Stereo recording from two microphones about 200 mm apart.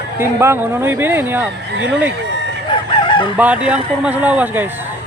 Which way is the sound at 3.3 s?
5° right (ahead or behind).